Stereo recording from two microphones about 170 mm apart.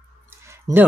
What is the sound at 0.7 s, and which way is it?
Speech, 20° right (ahead or behind).